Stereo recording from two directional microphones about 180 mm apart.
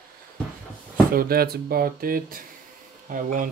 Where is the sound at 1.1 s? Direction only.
55° right (ahead or behind).